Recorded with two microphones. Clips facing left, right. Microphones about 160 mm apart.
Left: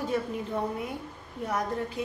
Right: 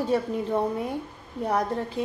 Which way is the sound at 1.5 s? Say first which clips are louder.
Right 4 dB; 35° right (ahead or behind).